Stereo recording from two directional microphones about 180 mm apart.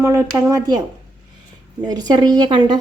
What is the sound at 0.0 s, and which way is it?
A woman's voice, 15° right (ahead or behind).